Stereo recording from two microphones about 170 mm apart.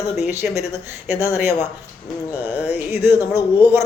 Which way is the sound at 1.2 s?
15° right (ahead or behind).